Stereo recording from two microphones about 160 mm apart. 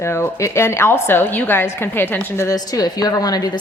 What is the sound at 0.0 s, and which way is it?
A woman's voice, 15° left (ahead or behind).